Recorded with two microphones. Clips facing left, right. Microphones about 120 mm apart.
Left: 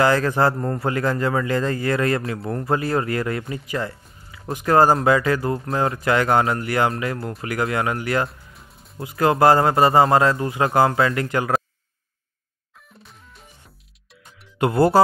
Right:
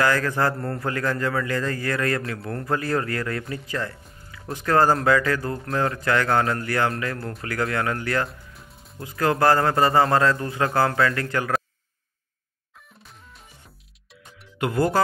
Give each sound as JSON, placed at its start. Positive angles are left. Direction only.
{"t": 0.0, "sound": "a man's voice", "side_deg": 20}
{"t": 14.6, "sound": "speech", "side_deg": 40}